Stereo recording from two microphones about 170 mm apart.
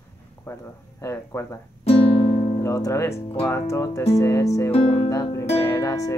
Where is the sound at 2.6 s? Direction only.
15° left (ahead or behind).